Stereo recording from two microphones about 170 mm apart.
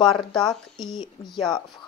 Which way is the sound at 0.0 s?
Centre (ahead or behind).